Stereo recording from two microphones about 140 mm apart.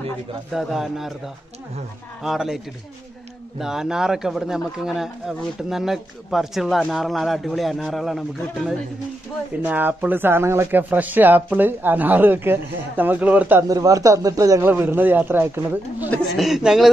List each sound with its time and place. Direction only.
0.5 s speech: centre (ahead or behind)
2.2 s speech: 5° right (ahead or behind)
9.6 s speech: 10° right (ahead or behind)
13.7 s a man's voice: 25° right (ahead or behind)
16.3 s speech: centre (ahead or behind)